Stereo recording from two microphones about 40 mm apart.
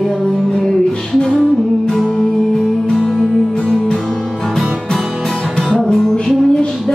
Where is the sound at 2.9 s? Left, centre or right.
Left.